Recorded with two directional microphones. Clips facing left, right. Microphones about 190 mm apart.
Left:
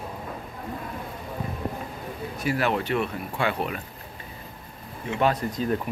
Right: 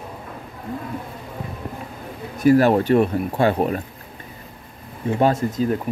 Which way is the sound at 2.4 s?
40° right (ahead or behind).